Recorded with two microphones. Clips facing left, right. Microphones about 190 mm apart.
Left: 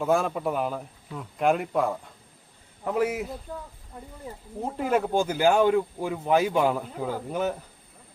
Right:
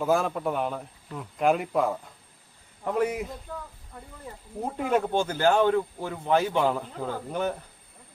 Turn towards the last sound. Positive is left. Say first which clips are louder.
# left 1 dB
turn(degrees=5)  # may be behind; listen again after turning